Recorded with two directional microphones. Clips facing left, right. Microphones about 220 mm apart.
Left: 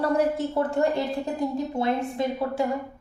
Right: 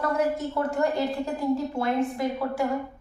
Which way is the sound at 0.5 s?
30° left (ahead or behind).